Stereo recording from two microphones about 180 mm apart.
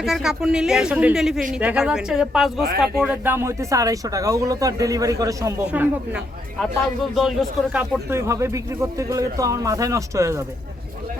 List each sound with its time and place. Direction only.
0.0 s speech: centre (ahead or behind)